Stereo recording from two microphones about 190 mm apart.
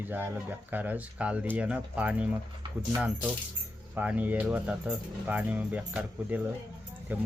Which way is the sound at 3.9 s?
5° right (ahead or behind).